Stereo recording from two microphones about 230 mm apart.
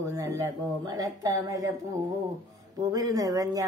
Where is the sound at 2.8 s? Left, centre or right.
Centre.